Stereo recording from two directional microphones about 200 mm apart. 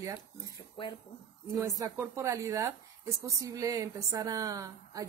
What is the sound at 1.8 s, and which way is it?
A woman's voice, 15° right (ahead or behind).